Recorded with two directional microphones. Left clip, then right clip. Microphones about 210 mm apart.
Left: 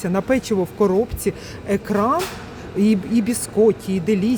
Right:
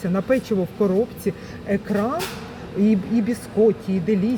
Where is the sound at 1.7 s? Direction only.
25° left (ahead or behind).